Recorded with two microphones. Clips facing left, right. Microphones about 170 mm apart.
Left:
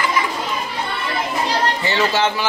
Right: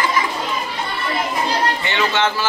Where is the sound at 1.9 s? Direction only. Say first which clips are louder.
Left 3 dB; 35° left (ahead or behind).